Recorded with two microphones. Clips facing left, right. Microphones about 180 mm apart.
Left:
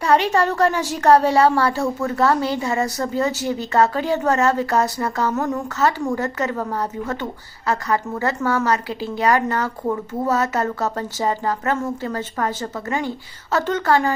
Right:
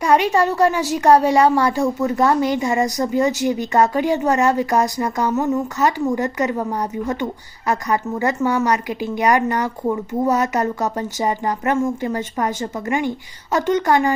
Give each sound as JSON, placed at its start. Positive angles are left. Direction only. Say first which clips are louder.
{"t": 0.0, "sound": "a woman's voice", "louder": "right 1 dB", "side_deg": -15}